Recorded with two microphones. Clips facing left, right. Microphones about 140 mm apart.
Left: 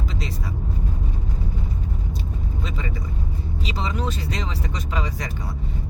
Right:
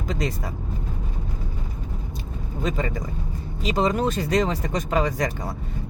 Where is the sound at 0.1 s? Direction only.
45° right (ahead or behind).